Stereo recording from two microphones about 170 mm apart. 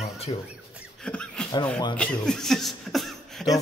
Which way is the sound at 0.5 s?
5° right (ahead or behind).